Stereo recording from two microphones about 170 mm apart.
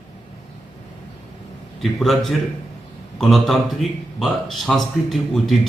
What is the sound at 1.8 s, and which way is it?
Speech, centre (ahead or behind).